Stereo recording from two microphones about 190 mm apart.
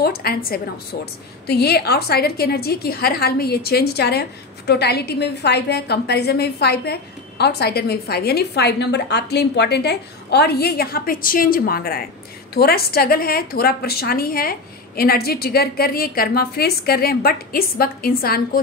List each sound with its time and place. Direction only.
0.0 s a woman's voice: 55° left (ahead or behind)